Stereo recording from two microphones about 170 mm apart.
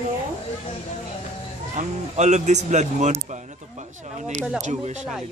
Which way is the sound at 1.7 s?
40° right (ahead or behind).